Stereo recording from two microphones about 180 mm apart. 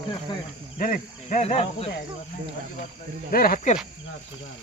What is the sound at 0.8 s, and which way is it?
Insect, 50° left (ahead or behind).